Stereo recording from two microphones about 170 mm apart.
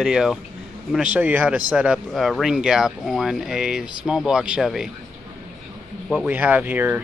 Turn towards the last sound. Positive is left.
turn(degrees=-10)  # may be behind; listen again after turning